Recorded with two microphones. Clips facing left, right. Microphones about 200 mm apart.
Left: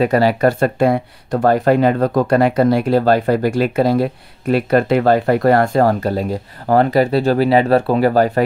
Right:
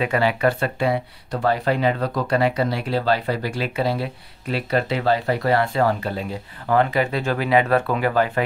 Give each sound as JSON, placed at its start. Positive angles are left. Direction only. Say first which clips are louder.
{"t": 0.0, "sound": "speech", "louder": "left 6 dB", "side_deg": 40}